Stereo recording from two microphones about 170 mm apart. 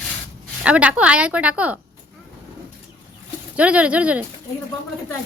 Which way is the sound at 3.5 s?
5° right (ahead or behind).